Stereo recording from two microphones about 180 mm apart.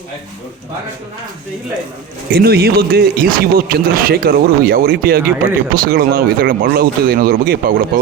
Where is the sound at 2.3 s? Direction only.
60° right (ahead or behind).